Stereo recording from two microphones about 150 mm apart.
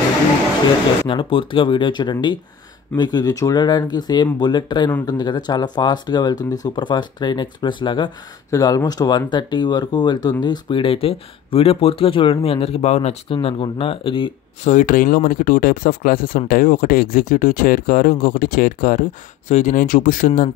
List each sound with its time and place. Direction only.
1.0 s speech: 35° left (ahead or behind)
14.7 s speech: 60° left (ahead or behind)
19.4 s speech: 55° left (ahead or behind)